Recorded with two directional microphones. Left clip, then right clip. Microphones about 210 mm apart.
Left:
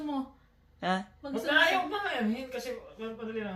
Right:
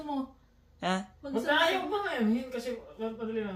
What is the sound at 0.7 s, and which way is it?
Speech, 10° right (ahead or behind).